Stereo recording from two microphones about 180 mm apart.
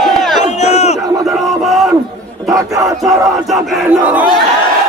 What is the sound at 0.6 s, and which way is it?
Battle cry, 40° left (ahead or behind).